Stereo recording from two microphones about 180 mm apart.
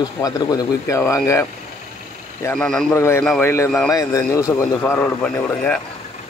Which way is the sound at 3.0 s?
15° left (ahead or behind).